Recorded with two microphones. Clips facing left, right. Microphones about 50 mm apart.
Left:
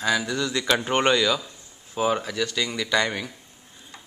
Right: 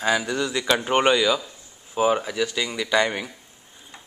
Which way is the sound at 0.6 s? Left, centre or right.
Centre.